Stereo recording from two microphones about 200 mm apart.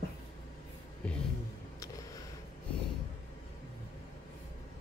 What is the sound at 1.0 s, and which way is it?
Music, 5° left (ahead or behind).